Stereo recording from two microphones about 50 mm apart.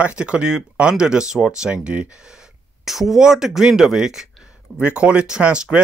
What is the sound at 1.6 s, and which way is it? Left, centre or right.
Speech, right.